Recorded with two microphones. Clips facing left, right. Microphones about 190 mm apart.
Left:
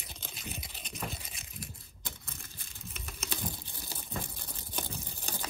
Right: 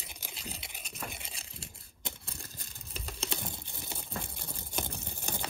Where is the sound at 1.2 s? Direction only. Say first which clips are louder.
Left 2 dB; 30° right (ahead or behind).